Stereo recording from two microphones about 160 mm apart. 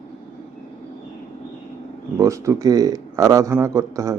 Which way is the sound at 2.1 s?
20° right (ahead or behind).